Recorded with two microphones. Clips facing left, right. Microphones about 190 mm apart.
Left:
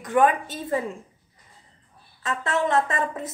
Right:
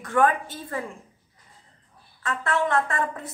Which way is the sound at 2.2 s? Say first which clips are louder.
Left 1 dB; 20° left (ahead or behind).